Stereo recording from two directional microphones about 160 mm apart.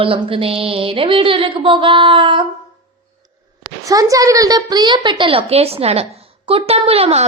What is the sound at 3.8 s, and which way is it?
A woman's voice, 20° right (ahead or behind).